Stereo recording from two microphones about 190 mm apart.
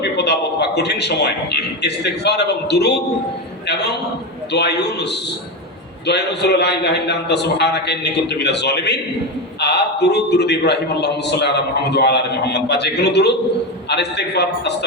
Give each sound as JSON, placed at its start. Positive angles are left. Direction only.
{"t": 0.0, "sound": "a man's voice", "side_deg": 60}